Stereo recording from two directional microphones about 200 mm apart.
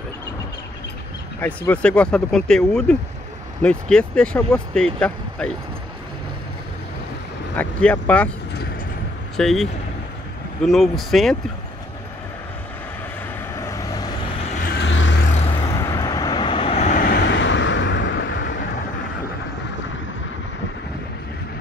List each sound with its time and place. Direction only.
1.7 s speech: 5° left (ahead or behind)
7.5 s speech: 5° left (ahead or behind)
9.4 s speech: centre (ahead or behind)
13.6 s vehicle: 15° left (ahead or behind)
14.6 s vehicle: 55° left (ahead or behind)
15.7 s vehicle: 15° left (ahead or behind); by 18.6 s 65° left (ahead or behind)